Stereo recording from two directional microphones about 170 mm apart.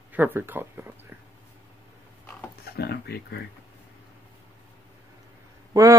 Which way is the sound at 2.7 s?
65° left (ahead or behind).